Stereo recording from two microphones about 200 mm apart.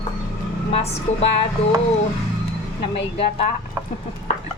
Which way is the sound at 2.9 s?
30° left (ahead or behind).